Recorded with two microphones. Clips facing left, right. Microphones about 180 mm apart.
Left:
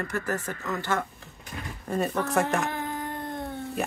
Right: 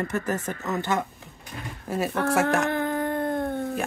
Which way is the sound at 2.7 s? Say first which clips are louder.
Right 7 dB; 60° right (ahead or behind).